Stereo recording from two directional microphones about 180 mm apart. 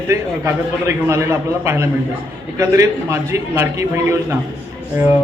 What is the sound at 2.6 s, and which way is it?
A man's voice, 15° right (ahead or behind).